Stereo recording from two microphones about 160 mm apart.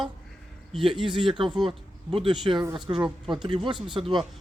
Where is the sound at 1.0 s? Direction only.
30° right (ahead or behind).